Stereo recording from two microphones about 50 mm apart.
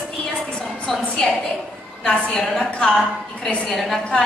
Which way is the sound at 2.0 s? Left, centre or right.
Centre.